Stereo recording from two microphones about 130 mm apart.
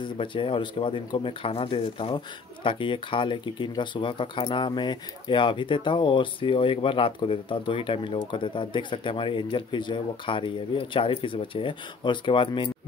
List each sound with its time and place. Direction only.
0.0 s speech: 40° left (ahead or behind)